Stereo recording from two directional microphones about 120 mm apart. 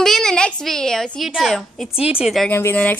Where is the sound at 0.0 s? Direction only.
5° left (ahead or behind).